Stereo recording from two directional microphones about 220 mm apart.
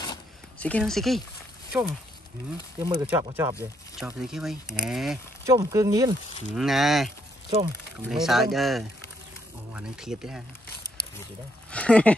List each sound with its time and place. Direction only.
0.6 s speech: 5° left (ahead or behind)
5.4 s speech: 15° right (ahead or behind)
6.5 s speech: centre (ahead or behind)
11.7 s speech: 5° left (ahead or behind)